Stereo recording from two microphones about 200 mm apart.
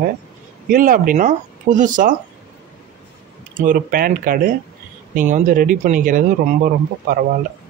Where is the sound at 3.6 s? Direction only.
45° right (ahead or behind).